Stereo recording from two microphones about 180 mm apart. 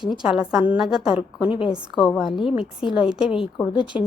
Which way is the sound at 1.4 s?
30° left (ahead or behind).